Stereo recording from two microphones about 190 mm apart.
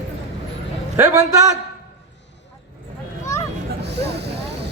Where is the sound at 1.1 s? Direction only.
20° right (ahead or behind).